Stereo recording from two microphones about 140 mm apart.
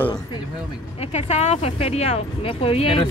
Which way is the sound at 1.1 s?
50° left (ahead or behind).